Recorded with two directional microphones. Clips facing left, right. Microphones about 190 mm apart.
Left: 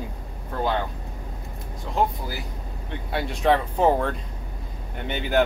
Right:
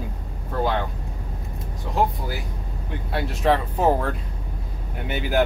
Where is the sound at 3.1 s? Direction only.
Centre (ahead or behind).